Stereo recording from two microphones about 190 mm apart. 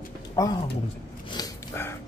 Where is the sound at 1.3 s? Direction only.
15° left (ahead or behind).